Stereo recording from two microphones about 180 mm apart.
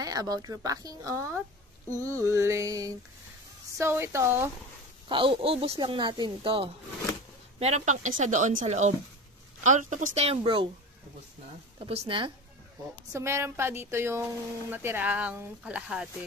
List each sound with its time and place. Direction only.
0.0 s a woman's voice: 20° right (ahead or behind)
5.0 s a woman's voice: 30° right (ahead or behind)
11.8 s a woman's voice: 30° right (ahead or behind)
13.1 s speech: 15° right (ahead or behind)